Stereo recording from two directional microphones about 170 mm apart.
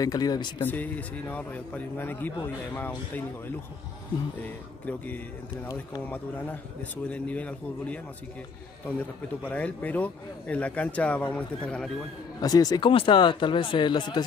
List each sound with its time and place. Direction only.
0.0 s speech: 20° left (ahead or behind)
0.6 s speech: 10° left (ahead or behind)
4.4 s speech: 10° left (ahead or behind)
9.4 s speech: 10° left (ahead or behind)
12.4 s speech: 20° left (ahead or behind)